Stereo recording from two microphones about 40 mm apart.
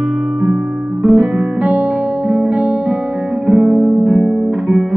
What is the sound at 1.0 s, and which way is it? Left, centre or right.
Music, right.